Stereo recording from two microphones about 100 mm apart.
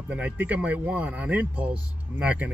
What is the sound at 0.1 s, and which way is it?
Speech, 15° right (ahead or behind).